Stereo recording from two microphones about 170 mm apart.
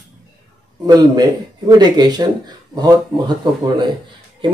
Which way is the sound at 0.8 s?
25° right (ahead or behind).